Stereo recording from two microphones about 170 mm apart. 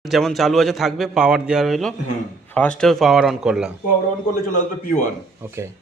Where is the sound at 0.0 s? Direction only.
Centre (ahead or behind).